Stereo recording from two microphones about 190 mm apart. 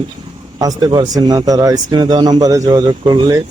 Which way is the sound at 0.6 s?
20° right (ahead or behind).